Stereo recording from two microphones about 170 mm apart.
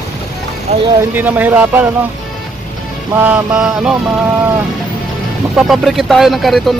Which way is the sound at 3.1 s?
5° right (ahead or behind).